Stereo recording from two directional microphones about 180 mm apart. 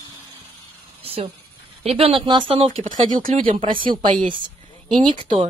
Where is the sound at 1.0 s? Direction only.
35° right (ahead or behind).